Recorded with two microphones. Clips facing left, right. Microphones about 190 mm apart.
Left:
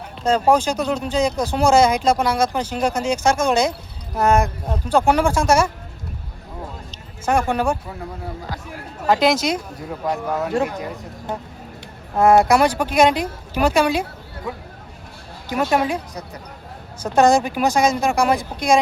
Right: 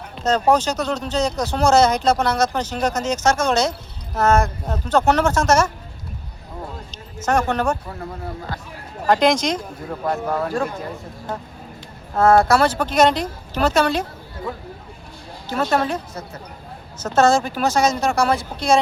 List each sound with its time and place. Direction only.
0.3 s speech: 10° left (ahead or behind)
7.2 s speech: 10° left (ahead or behind)
9.0 s speech: 5° left (ahead or behind)
10.5 s speech: 20° left (ahead or behind)
12.1 s speech: 15° left (ahead or behind)